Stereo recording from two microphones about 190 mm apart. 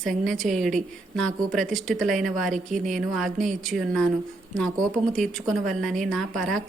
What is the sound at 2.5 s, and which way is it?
Speech, 40° right (ahead or behind).